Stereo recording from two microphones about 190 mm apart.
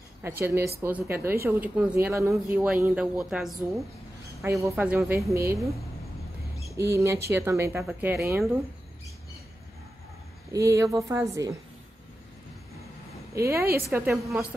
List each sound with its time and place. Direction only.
0.2 s speech: 15° right (ahead or behind)
6.8 s speech: 15° right (ahead or behind)
10.5 s speech: 15° right (ahead or behind)
13.3 s speech: 15° right (ahead or behind)